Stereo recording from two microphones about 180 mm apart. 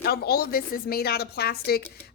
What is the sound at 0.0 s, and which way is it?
A woman's voice, 60° left (ahead or behind).